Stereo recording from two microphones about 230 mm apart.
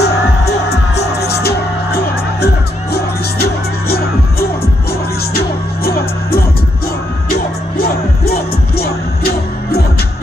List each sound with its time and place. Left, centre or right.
0.0 s music: left
5.9 s music: left
8.3 s music: left